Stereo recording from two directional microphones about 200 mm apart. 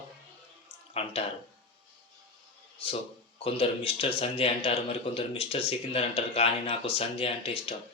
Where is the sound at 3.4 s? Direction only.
25° left (ahead or behind).